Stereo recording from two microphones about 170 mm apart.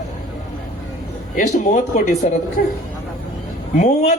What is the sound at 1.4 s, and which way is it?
A man's voice, 45° left (ahead or behind).